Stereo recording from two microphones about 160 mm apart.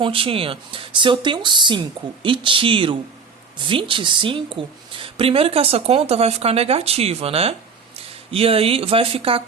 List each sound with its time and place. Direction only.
0.0 s a woman's voice: 35° right (ahead or behind)